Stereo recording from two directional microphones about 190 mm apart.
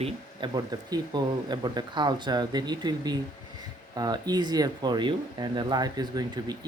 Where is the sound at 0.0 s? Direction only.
20° right (ahead or behind).